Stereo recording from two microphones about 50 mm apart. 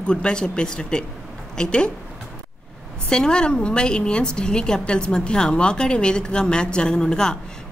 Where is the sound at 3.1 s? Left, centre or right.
Centre.